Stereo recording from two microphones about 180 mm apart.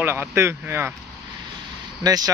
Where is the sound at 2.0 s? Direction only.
20° right (ahead or behind).